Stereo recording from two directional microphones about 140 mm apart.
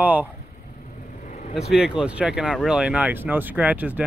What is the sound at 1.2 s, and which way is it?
Vehicle, 60° left (ahead or behind).